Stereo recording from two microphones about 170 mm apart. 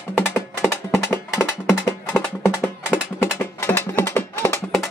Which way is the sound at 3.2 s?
15° left (ahead or behind).